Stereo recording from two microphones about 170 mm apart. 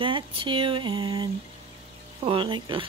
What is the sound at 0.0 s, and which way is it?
Speech, 30° right (ahead or behind).